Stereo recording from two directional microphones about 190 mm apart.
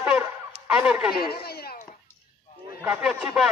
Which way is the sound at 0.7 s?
5° right (ahead or behind).